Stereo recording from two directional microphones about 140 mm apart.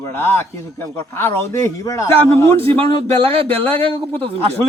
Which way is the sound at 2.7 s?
40° right (ahead or behind).